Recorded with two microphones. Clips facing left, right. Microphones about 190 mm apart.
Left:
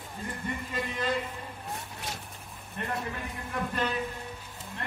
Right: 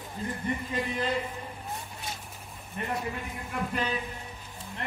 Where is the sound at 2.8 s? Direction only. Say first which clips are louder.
Right 1 dB; 15° right (ahead or behind).